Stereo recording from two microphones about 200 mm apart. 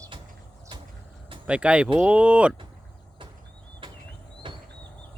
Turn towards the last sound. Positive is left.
turn(degrees=-25)  # may be behind; listen again after turning